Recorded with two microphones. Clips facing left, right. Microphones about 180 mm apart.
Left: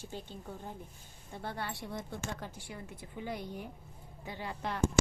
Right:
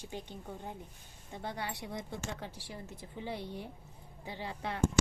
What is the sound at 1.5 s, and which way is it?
Speech, 55° left (ahead or behind).